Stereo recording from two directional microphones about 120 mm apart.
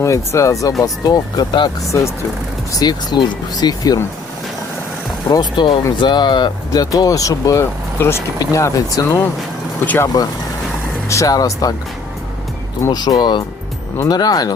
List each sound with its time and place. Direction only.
0.0 s speech: 25° left (ahead or behind)
2.7 s speech: 35° left (ahead or behind)
5.3 s speech: 40° left (ahead or behind)
9.8 s speech: 15° left (ahead or behind)
11.1 s speech: 30° left (ahead or behind)
12.9 s speech: 35° left (ahead or behind)